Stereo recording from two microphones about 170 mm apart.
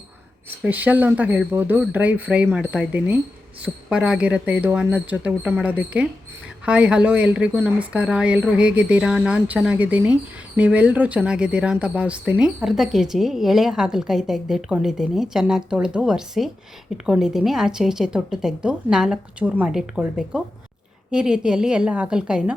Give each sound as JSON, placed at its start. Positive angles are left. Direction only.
{"t": 0.6, "sound": "a woman's voice", "side_deg": -10}